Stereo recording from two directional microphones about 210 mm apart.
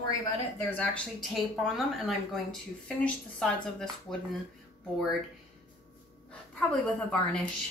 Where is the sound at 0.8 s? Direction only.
Centre (ahead or behind).